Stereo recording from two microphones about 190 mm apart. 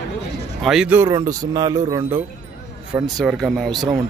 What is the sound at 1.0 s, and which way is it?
A man's voice, 20° right (ahead or behind).